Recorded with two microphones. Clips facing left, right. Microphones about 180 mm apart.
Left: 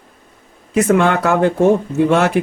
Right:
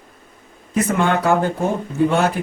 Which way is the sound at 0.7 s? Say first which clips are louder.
Left 5 dB; 80° left.